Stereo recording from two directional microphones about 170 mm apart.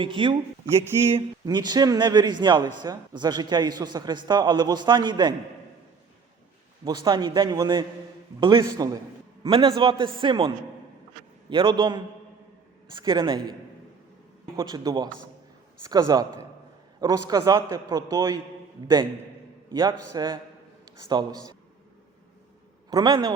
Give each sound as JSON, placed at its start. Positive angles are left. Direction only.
{"t": 0.0, "sound": "a man's voice", "side_deg": -30}
{"t": 6.8, "sound": "a man's voice", "side_deg": -25}
{"t": 19.7, "sound": "a man's voice", "side_deg": -25}
{"t": 22.9, "sound": "a man's voice", "side_deg": -25}